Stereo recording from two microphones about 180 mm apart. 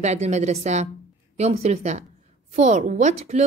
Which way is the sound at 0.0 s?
40° right (ahead or behind).